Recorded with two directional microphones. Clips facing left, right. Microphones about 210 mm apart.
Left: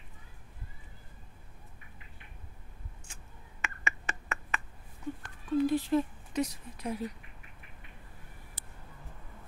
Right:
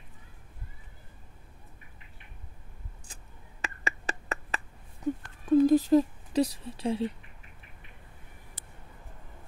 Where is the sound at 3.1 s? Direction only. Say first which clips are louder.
Right 2 dB; 35° right (ahead or behind).